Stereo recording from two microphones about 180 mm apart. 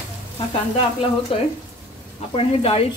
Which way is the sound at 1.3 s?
30° left (ahead or behind).